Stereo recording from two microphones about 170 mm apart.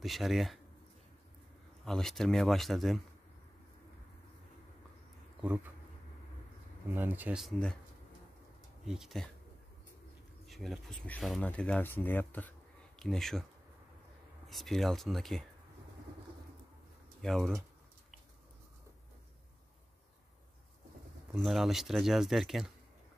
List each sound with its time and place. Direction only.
0.0 s speech: centre (ahead or behind)
1.9 s speech: centre (ahead or behind)
5.4 s speech: 10° right (ahead or behind)
6.9 s speech: 10° right (ahead or behind)
8.8 s speech: centre (ahead or behind)
10.4 s speech: centre (ahead or behind)
14.5 s speech: centre (ahead or behind)
17.2 s speech: centre (ahead or behind)
21.3 s speech: centre (ahead or behind)